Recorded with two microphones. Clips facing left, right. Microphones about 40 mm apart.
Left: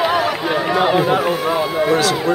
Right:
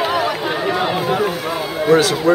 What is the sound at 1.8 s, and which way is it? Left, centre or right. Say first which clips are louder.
Speech: right 6 dB; centre.